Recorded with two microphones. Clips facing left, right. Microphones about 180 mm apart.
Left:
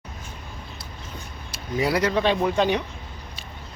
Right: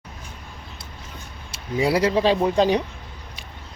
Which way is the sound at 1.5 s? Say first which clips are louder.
Right 2 dB; 25° right (ahead or behind).